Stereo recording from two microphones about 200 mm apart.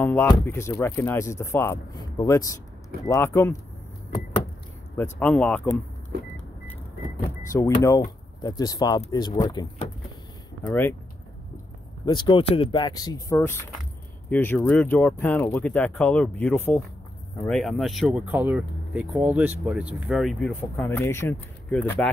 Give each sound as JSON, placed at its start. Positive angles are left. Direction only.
{"t": 0.0, "sound": "speech", "side_deg": 10}
{"t": 4.9, "sound": "speech", "side_deg": 10}
{"t": 7.2, "sound": "speech", "side_deg": 15}
{"t": 10.7, "sound": "speech", "side_deg": 10}
{"t": 12.1, "sound": "speech", "side_deg": 25}